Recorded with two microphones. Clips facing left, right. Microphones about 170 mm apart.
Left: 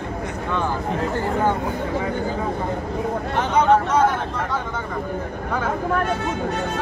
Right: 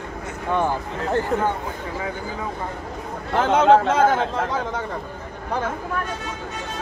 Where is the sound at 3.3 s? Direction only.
90° right.